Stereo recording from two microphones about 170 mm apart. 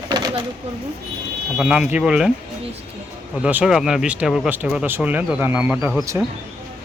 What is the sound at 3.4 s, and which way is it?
Speech, 5° right (ahead or behind).